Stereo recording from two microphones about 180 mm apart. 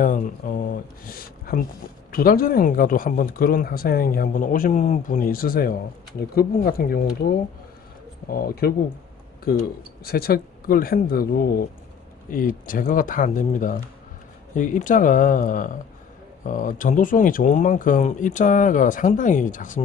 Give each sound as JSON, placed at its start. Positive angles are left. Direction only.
{"t": 0.0, "sound": "speech", "side_deg": 50}
{"t": 10.0, "sound": "speech", "side_deg": 55}